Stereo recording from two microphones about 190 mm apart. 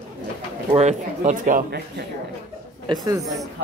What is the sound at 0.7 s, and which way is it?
Speech, 35° right (ahead or behind).